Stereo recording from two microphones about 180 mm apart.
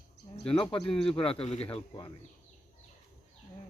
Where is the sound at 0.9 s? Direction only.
5° left (ahead or behind).